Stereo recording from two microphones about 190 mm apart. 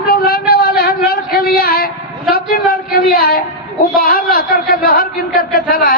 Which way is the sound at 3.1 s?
50° left (ahead or behind).